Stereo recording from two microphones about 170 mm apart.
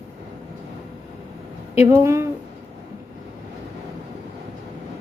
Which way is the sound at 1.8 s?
15° right (ahead or behind).